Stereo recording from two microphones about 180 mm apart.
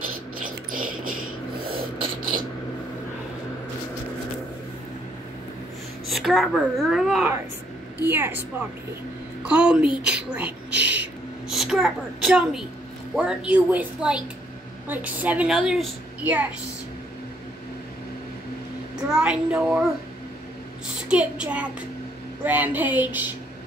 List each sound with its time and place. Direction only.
0.4 s a sound: 50° right (ahead or behind)
6.0 s a woman's voice: centre (ahead or behind)
8.0 s a woman's voice: 10° right (ahead or behind)
9.4 s a woman's voice: 5° right (ahead or behind)
10.0 s a sound: 5° right (ahead or behind)
13.1 s a woman's voice: 5° right (ahead or behind)
18.9 s a woman's voice: 5° right (ahead or behind)
21.1 s a woman's voice: 5° right (ahead or behind)